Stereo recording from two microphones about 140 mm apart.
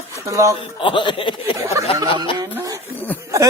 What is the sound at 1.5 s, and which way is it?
Speech, 20° right (ahead or behind).